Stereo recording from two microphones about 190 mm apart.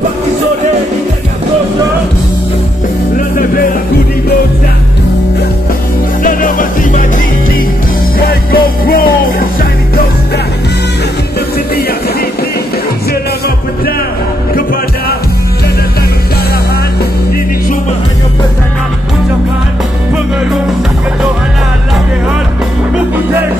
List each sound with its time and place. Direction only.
3.2 s music: 45° left (ahead or behind)
6.2 s music: 45° left (ahead or behind)
8.2 s music: 50° left (ahead or behind)